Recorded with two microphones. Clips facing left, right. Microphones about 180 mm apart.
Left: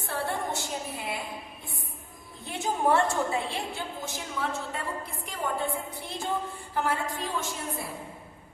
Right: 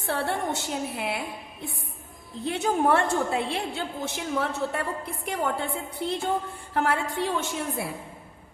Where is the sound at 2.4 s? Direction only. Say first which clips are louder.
Right 3 dB; 65° right (ahead or behind).